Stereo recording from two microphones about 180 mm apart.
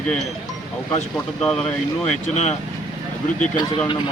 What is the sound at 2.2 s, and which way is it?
Speech, 40° left (ahead or behind).